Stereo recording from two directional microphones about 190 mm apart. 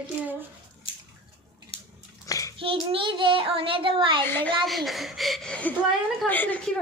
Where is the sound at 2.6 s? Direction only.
30° right (ahead or behind).